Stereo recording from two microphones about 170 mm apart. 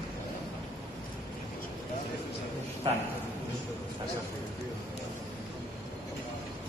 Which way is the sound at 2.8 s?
30° right (ahead or behind).